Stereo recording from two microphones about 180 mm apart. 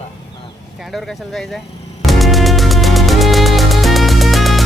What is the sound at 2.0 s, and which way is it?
Music, centre (ahead or behind).